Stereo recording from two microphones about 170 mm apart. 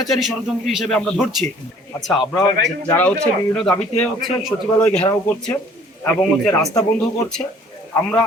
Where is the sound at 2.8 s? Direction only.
10° left (ahead or behind).